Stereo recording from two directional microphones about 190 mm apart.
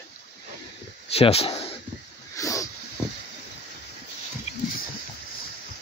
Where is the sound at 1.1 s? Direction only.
30° left (ahead or behind).